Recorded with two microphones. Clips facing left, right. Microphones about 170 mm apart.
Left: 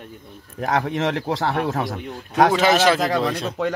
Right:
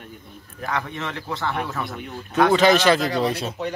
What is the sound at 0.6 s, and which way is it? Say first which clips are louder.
Speech: left 6 dB; 85° left.